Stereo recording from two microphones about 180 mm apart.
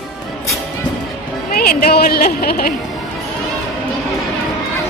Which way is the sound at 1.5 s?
55° left (ahead or behind).